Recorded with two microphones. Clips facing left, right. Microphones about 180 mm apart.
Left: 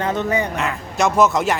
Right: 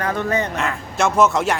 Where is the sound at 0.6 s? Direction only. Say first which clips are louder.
Left 1 dB; centre (ahead or behind).